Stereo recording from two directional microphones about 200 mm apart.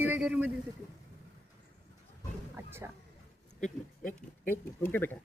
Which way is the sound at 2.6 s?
10° right (ahead or behind).